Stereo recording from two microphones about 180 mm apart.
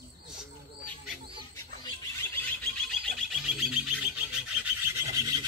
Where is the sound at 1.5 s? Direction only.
20° left (ahead or behind).